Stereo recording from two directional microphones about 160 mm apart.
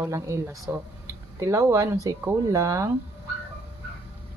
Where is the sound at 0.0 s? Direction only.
20° right (ahead or behind).